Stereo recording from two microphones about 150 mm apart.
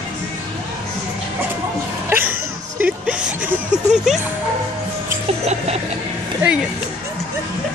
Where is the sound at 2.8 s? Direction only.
10° right (ahead or behind).